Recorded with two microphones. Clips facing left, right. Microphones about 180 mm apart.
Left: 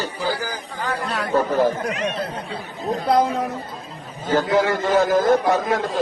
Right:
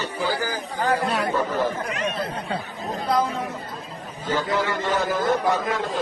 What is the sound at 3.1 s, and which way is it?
Speech, 55° left (ahead or behind).